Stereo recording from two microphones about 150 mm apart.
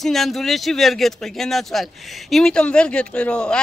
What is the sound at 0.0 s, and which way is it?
Speech, centre (ahead or behind).